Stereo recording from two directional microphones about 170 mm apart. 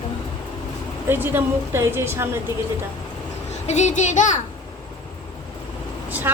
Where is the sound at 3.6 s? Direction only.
45° left (ahead or behind).